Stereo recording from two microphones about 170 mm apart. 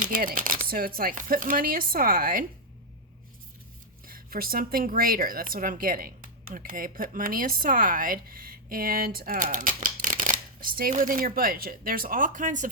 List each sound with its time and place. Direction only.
0.0 s speech: 55° right (ahead or behind)
4.0 s speech: 60° right (ahead or behind)